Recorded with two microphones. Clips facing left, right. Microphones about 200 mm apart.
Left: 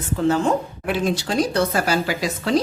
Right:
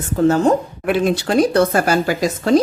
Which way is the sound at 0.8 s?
55° right (ahead or behind).